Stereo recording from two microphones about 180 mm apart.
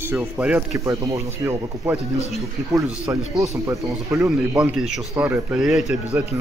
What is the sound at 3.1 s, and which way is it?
Speech, 10° right (ahead or behind).